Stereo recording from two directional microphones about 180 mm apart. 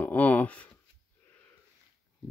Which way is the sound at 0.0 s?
10° left (ahead or behind).